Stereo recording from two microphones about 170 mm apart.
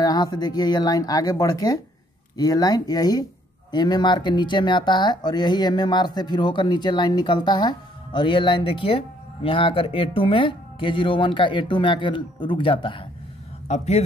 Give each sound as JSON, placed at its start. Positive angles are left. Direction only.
{"t": 0.0, "sound": "a man's voice", "side_deg": 20}